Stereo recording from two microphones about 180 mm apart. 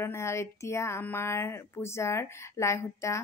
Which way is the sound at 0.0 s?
15° left (ahead or behind).